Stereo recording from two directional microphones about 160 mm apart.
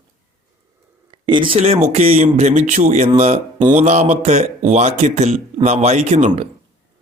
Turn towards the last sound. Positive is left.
turn(degrees=-45)  # may be behind; listen again after turning